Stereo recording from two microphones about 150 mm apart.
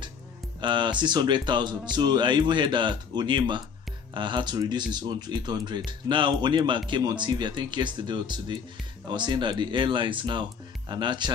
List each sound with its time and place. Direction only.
0.6 s speech: 30° right (ahead or behind)